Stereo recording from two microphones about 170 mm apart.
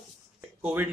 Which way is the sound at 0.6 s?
10° right (ahead or behind).